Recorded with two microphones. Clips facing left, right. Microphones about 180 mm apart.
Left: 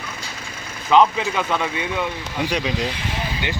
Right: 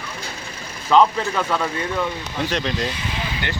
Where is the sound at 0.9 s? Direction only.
5° left (ahead or behind).